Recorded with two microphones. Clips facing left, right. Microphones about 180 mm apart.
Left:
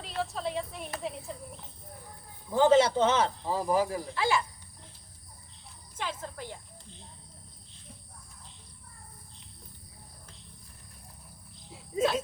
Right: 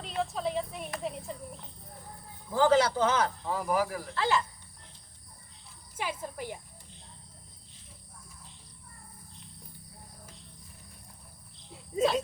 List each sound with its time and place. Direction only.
0.0 s a child's voice: centre (ahead or behind)
2.5 s speech: 20° left (ahead or behind)
4.1 s speech: 10° left (ahead or behind)
6.0 s speech: 10° right (ahead or behind)
11.7 s cricket: centre (ahead or behind)